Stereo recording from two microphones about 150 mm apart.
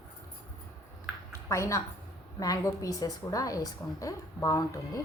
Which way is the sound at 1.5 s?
20° left (ahead or behind).